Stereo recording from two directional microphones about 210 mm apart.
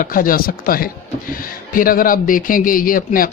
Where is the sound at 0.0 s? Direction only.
40° left (ahead or behind).